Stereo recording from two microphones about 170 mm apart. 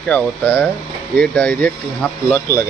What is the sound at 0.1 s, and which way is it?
Speech, 10° left (ahead or behind).